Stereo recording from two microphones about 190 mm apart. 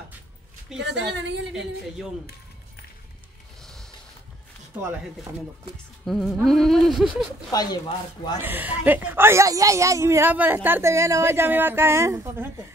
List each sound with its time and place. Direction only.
0.7 s a woman's voice: 65° right (ahead or behind)
6.0 s a sound: centre (ahead or behind)
7.5 s speech: 20° left (ahead or behind)
8.4 s a woman's voice: 10° right (ahead or behind)